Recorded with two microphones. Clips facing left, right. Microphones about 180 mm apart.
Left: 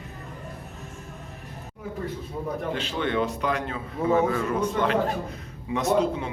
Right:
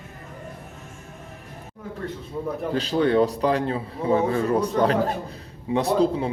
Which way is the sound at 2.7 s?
40° right (ahead or behind).